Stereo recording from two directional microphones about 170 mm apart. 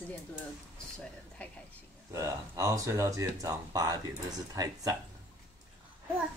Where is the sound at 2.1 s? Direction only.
20° right (ahead or behind).